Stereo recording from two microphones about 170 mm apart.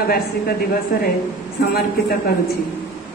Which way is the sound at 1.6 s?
65° left (ahead or behind).